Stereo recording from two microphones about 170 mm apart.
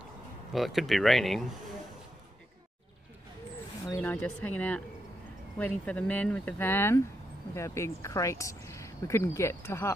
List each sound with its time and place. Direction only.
0.5 s speech: centre (ahead or behind)
3.8 s speech: 10° left (ahead or behind)